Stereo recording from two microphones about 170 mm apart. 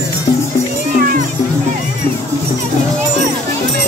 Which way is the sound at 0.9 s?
55° right (ahead or behind).